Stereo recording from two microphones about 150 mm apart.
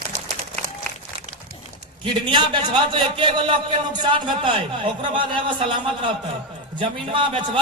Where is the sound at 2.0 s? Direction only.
35° right (ahead or behind).